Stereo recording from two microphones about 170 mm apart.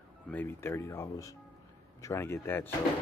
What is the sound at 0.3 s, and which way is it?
Speech, 10° left (ahead or behind).